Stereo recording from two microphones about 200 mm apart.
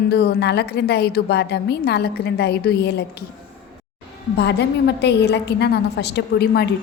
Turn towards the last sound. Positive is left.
turn(degrees=55)  # may be behind; listen again after turning